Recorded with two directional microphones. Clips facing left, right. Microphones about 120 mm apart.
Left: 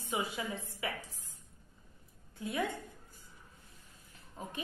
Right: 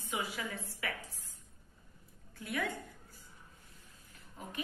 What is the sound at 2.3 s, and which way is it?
Speech, 20° left (ahead or behind).